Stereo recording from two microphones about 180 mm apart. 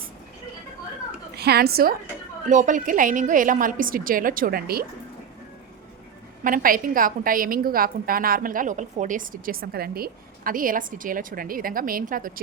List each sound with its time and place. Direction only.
1.4 s a woman's voice: 60° right (ahead or behind)
2.5 s a woman's voice: 45° right (ahead or behind)
6.4 s a woman's voice: 50° right (ahead or behind)